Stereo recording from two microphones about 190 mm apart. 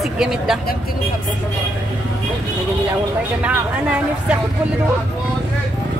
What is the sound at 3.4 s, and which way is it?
Speech, 5° right (ahead or behind).